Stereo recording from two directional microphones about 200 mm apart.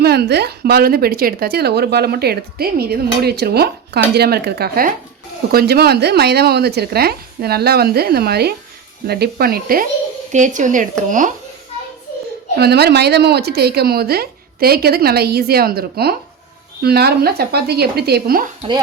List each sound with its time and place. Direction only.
0.0 s a woman's voice: 55° right (ahead or behind)
12.5 s a woman's voice: 55° right (ahead or behind)